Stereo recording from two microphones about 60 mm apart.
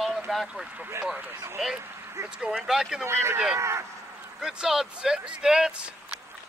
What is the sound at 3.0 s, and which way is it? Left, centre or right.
Speech, right.